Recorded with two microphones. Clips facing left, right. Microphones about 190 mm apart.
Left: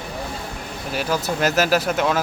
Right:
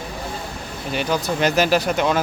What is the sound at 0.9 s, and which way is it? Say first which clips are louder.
Speech: right 1 dB; 5° left (ahead or behind).